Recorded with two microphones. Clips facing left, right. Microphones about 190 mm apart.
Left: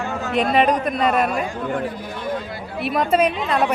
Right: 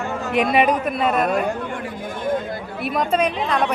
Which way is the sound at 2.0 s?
50° right (ahead or behind).